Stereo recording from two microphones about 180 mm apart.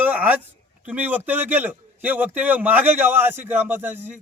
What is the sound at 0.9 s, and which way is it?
A man's voice, 10° right (ahead or behind).